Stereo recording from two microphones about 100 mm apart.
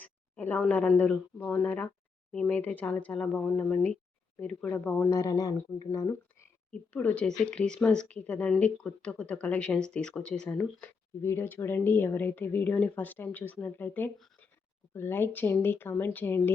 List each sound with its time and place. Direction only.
0.0 s a sound: 20° left (ahead or behind)
0.7 s speech: 15° left (ahead or behind); by 6.5 s 35° left (ahead or behind)
6.7 s speech: 15° left (ahead or behind)
11.2 s speech: 25° left (ahead or behind)